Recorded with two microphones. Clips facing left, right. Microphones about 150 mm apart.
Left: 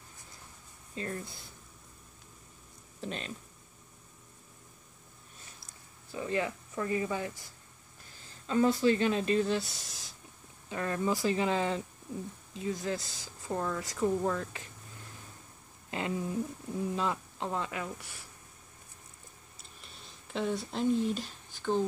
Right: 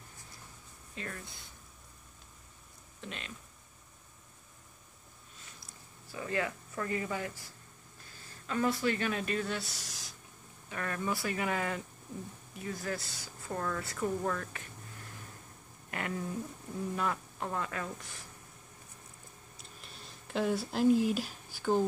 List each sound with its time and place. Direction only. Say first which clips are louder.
0.9 s speech: left 5 dB; 30° left (ahead or behind)
3.0 s speech: left 6 dB; 35° left (ahead or behind)
6.1 s speech: left 2 dB; 20° left (ahead or behind)
8.5 s speech: left 5 dB; 25° left (ahead or behind)
15.9 s speech: left 3 dB; 20° left (ahead or behind)
19.5 s a sound: right 2 dB; centre (ahead or behind)